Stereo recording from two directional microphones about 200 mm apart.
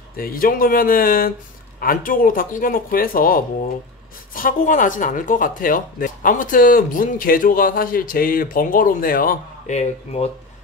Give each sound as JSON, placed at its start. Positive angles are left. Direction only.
{"t": 0.2, "sound": "speech", "side_deg": 45}